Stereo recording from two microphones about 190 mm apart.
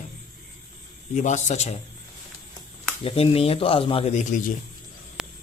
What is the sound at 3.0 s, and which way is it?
A man's voice, 30° left (ahead or behind).